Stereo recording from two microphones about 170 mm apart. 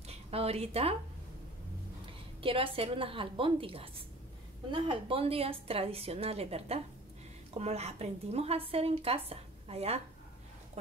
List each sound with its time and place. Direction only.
0.0 s speech: 35° right (ahead or behind)
2.4 s a woman's voice: 30° right (ahead or behind)